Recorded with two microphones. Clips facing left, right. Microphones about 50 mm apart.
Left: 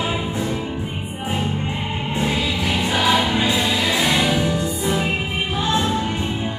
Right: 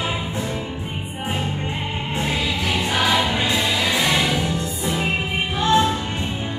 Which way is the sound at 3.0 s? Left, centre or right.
Centre.